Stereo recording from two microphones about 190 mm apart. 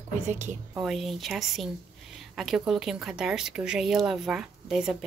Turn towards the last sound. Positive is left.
turn(degrees=-5)  # may be behind; listen again after turning